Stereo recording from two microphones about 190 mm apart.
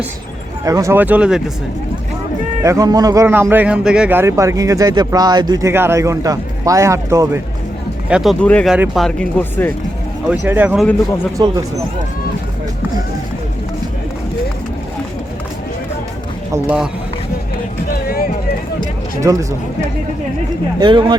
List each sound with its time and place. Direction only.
0.6 s a man's voice: 15° right (ahead or behind)
2.6 s a man's voice: 20° right (ahead or behind)
8.1 s speech: centre (ahead or behind)
10.2 s a man's voice: 10° right (ahead or behind)
11.3 s speech: 20° right (ahead or behind)
17.9 s music: 50° left (ahead or behind)
19.2 s a man's voice: 15° right (ahead or behind)
20.7 s speech: 25° right (ahead or behind)